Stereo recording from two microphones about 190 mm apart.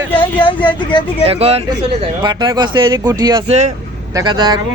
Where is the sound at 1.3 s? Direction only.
30° right (ahead or behind).